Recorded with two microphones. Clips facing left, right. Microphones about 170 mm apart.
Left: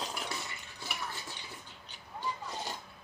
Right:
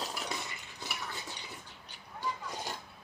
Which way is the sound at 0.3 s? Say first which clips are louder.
Right 1 dB; 20° right (ahead or behind).